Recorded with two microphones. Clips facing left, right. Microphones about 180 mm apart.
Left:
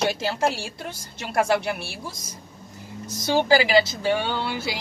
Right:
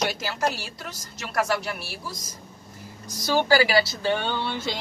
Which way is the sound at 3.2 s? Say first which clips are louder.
Left 1 dB; 20° left (ahead or behind).